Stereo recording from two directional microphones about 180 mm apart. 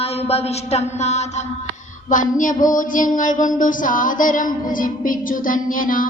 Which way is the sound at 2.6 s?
45° left (ahead or behind).